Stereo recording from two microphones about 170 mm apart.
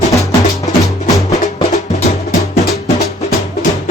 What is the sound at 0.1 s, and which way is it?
Music, 20° left (ahead or behind).